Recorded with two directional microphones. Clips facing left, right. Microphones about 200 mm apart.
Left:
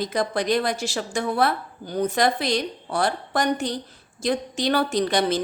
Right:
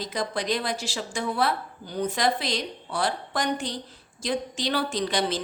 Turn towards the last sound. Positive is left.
turn(degrees=50)  # may be behind; listen again after turning